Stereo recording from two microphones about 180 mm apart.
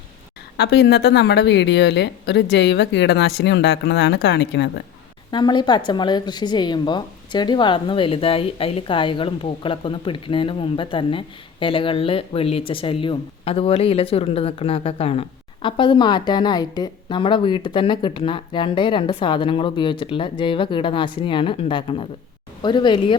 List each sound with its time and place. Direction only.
0.5 s a woman's voice: 70° left (ahead or behind)
5.3 s a woman's voice: 25° left (ahead or behind)